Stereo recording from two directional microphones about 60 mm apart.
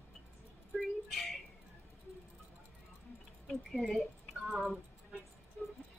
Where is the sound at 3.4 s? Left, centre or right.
Centre.